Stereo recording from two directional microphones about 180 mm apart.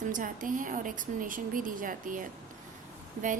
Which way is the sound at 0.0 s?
50° right (ahead or behind).